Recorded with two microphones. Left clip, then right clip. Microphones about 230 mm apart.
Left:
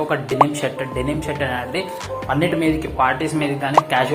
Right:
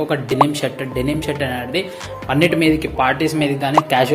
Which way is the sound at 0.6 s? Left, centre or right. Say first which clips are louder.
Right 1 dB; right.